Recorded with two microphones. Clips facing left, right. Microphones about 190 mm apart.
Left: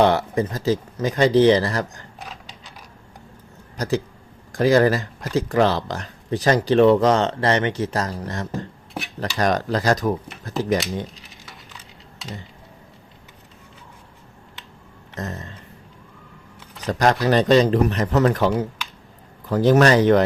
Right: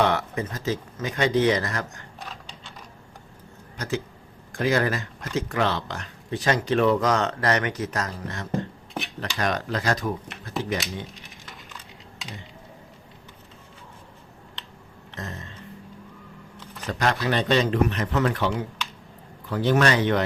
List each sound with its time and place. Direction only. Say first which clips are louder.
0.0 s speech: left 6 dB; 35° left (ahead or behind)
3.8 s speech: left 6 dB; 40° left (ahead or behind)
15.1 s a sound: left 6 dB; 40° left (ahead or behind)
16.8 s speech: left 6 dB; 40° left (ahead or behind)